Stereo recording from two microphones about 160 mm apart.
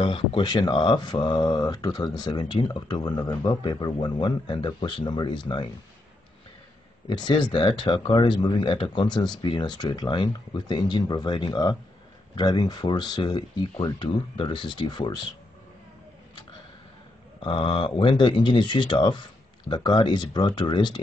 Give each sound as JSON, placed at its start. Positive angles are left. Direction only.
{"t": 0.0, "sound": "speech", "side_deg": 35}
{"t": 7.1, "sound": "speech", "side_deg": 30}
{"t": 17.4, "sound": "speech", "side_deg": 30}